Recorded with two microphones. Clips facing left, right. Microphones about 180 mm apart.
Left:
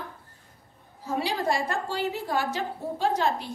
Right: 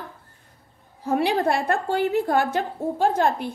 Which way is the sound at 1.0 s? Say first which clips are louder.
Right 6 dB; 60° right (ahead or behind).